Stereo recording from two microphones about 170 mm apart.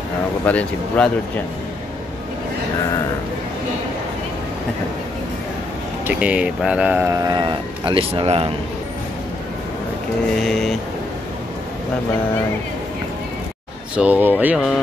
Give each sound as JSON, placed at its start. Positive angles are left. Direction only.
{"t": 0.5, "sound": "speech", "side_deg": 10}
{"t": 6.0, "sound": "speech", "side_deg": -10}
{"t": 10.4, "sound": "speech", "side_deg": 0}
{"t": 13.9, "sound": "speech", "side_deg": -10}